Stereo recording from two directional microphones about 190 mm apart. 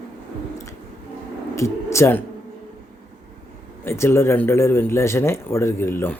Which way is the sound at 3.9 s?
15° left (ahead or behind).